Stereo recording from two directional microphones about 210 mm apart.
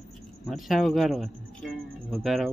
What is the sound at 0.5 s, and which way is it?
Speech, centre (ahead or behind).